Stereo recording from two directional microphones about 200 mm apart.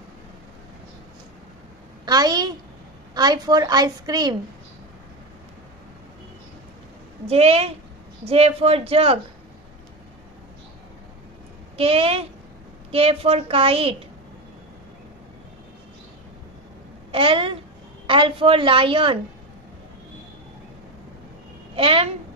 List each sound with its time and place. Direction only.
2.0 s a woman's voice: 20° right (ahead or behind)
7.2 s a woman's voice: 30° right (ahead or behind)
11.7 s a woman's voice: 30° right (ahead or behind)
17.1 s a woman's voice: 25° right (ahead or behind)
21.7 s a woman's voice: 30° right (ahead or behind)